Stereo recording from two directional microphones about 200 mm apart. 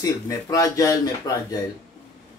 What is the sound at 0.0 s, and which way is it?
Speech, 15° left (ahead or behind).